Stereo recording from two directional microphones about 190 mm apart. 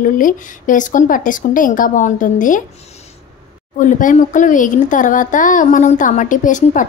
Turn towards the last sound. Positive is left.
turn(degrees=40)  # may be behind; listen again after turning